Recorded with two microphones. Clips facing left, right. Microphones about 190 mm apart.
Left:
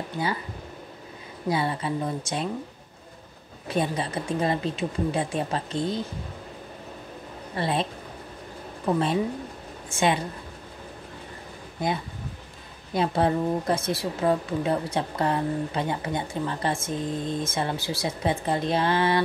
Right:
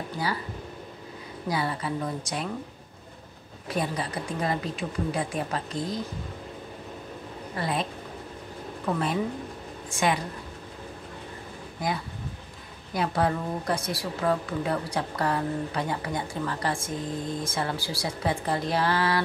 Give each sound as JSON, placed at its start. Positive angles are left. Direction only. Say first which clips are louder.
{"t": 0.2, "sound": "speech", "louder": "left 2 dB", "side_deg": 25}
{"t": 1.5, "sound": "speech", "louder": "left 3 dB", "side_deg": 25}
{"t": 3.6, "sound": "speech", "louder": "left 3 dB", "side_deg": 25}
{"t": 7.5, "sound": "speech", "louder": "left 3 dB", "side_deg": 25}
{"t": 8.8, "sound": "a woman's voice", "louder": "left 3 dB", "side_deg": 25}
{"t": 12.9, "sound": "speech", "louder": "left 3 dB", "side_deg": 25}